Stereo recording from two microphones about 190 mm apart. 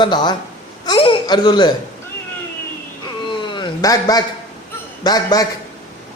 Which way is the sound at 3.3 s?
25° left (ahead or behind).